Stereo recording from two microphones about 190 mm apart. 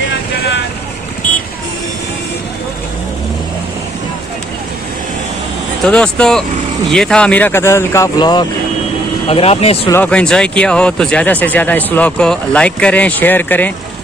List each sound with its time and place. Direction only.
5.9 s speech: 5° left (ahead or behind); by 9.8 s 30° left (ahead or behind)
9.8 s speech: 10° left (ahead or behind)